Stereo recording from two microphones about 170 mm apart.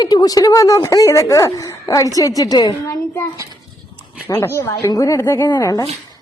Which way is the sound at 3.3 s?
20° right (ahead or behind).